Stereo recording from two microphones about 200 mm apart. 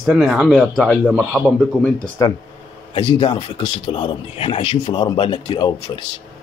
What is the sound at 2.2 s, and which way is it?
A man's voice, 15° left (ahead or behind).